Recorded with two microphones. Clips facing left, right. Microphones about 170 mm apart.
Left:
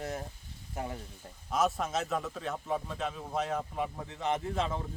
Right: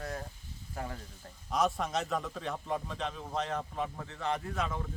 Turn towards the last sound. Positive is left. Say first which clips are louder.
# left 3 dB
turn(degrees=30)  # may be behind; listen again after turning